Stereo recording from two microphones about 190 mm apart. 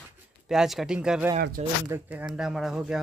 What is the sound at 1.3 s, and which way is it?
Speech, 55° right (ahead or behind).